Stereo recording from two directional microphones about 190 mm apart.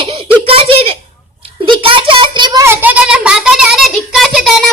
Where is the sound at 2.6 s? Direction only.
10° right (ahead or behind).